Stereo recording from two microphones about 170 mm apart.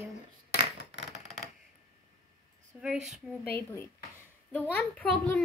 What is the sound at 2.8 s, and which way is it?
Speech, 5° right (ahead or behind).